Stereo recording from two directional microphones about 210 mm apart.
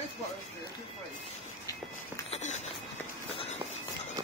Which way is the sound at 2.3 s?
35° left (ahead or behind).